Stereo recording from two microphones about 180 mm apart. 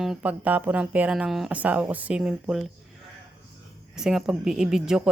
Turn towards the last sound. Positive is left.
turn(degrees=-5)  # may be behind; listen again after turning